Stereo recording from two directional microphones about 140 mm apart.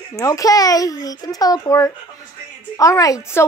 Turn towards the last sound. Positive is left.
turn(degrees=25)  # may be behind; listen again after turning